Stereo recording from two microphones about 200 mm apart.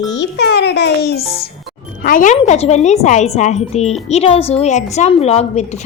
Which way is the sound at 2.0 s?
40° left (ahead or behind).